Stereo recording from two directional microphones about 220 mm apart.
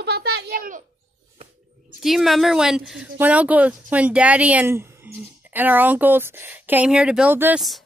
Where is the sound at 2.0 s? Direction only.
Centre (ahead or behind).